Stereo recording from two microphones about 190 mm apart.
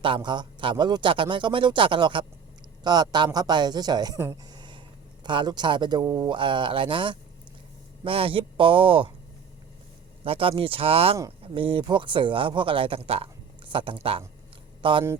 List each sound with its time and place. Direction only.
0.0 s a man's voice: 25° right (ahead or behind)
10.2 s a man's voice: 30° right (ahead or behind)